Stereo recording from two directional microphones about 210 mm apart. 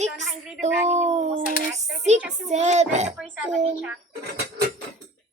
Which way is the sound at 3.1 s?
5° right (ahead or behind).